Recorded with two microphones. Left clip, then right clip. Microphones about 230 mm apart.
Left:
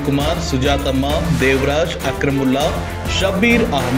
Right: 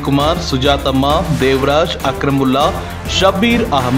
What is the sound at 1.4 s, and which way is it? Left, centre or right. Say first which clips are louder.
Speech: right 3 dB; centre.